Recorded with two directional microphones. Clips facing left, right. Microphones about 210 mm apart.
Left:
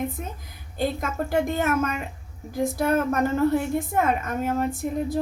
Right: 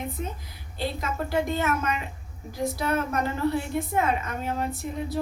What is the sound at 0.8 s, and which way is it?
A woman's voice, 50° left (ahead or behind).